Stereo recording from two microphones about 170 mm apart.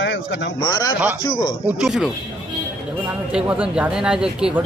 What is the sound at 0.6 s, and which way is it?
Speech, 25° left (ahead or behind).